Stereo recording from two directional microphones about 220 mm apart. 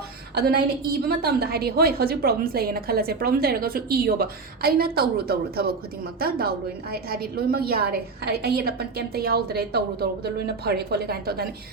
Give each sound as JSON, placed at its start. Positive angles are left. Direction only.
{"t": 0.3, "sound": "a woman's voice", "side_deg": -45}